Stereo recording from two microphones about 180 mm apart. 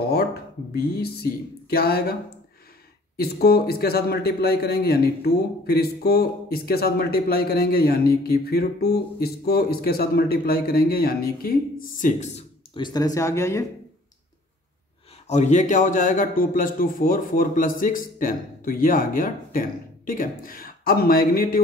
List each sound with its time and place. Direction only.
0.0 s a man's voice: 60° left (ahead or behind)
3.2 s a man's voice: 60° left (ahead or behind); by 12.4 s 40° left (ahead or behind)
12.7 s speech: 25° left (ahead or behind)
15.2 s speech: 40° left (ahead or behind)